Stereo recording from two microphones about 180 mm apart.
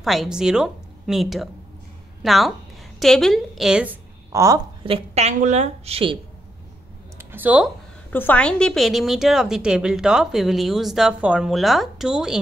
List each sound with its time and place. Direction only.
0.0 s a woman's voice: centre (ahead or behind); by 4.6 s 15° right (ahead or behind)
4.8 s a woman's voice: 35° right (ahead or behind)
7.2 s a sound: 10° right (ahead or behind)
8.1 s a woman's voice: 10° left (ahead or behind)